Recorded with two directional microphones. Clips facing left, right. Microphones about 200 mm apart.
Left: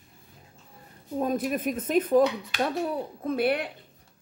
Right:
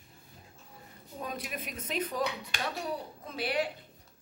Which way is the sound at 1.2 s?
50° left (ahead or behind).